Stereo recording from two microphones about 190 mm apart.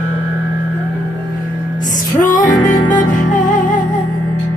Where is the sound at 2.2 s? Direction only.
40° left (ahead or behind).